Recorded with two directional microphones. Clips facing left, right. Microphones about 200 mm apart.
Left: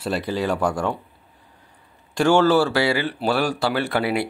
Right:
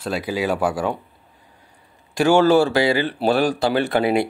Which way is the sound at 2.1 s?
10° right (ahead or behind).